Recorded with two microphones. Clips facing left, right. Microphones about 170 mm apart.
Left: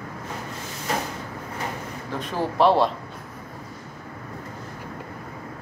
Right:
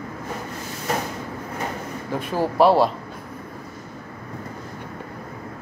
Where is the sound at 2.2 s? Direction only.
10° right (ahead or behind).